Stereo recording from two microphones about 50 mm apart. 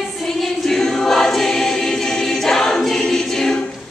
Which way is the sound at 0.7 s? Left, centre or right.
Centre.